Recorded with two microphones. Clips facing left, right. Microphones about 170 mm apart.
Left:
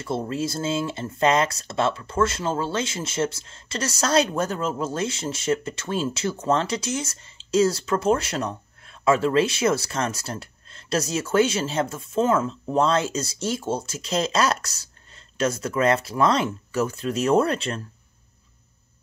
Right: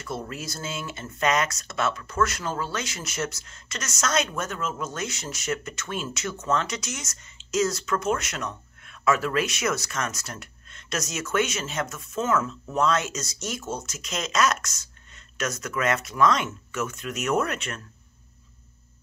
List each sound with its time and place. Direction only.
0.0 s speech: 30° left (ahead or behind)